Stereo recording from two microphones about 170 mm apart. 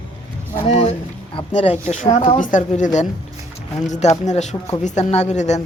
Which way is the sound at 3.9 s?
45° left (ahead or behind).